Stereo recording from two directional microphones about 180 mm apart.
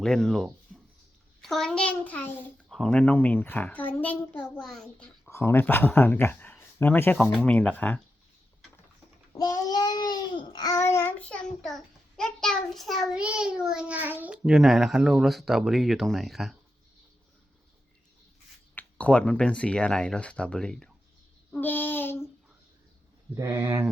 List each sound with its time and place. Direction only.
0.0 s a child's voice: centre (ahead or behind)
9.3 s child singing: 20° left (ahead or behind)
11.3 s a child's voice: 5° left (ahead or behind)
18.7 s a child's voice: 10° left (ahead or behind)
23.3 s speech: 15° right (ahead or behind)